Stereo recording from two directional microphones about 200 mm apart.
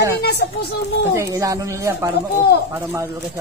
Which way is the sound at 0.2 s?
55° left (ahead or behind).